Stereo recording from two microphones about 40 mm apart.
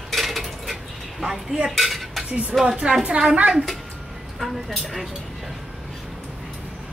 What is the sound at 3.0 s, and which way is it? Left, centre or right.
Speech, right.